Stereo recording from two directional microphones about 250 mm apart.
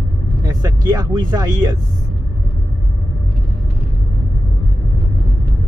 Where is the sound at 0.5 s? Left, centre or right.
Centre.